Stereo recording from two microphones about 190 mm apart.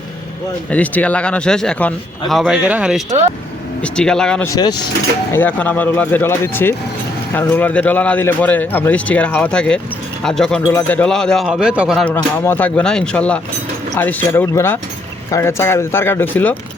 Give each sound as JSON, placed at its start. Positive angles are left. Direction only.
{"t": 0.7, "sound": "a man's voice", "side_deg": 5}
{"t": 3.8, "sound": "a man's voice", "side_deg": 5}
{"t": 4.4, "sound": "speech", "side_deg": 20}
{"t": 5.3, "sound": "a man's voice", "side_deg": 10}
{"t": 12.1, "sound": "speech", "side_deg": 10}